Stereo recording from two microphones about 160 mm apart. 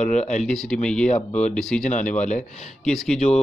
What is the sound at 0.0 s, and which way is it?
Speech, 50° left (ahead or behind).